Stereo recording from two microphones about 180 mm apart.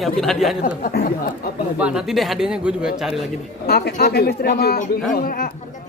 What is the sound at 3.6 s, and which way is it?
Speech, 60° left (ahead or behind).